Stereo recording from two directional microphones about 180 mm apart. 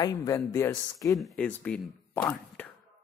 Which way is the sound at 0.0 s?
20° left (ahead or behind).